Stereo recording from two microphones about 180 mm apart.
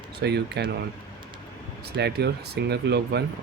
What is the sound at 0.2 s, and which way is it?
Speech, 65° right (ahead or behind).